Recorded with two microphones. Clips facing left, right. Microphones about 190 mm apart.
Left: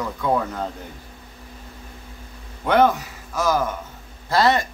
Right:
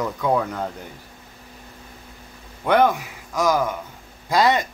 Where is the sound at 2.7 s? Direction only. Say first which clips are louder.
Even; 15° right (ahead or behind).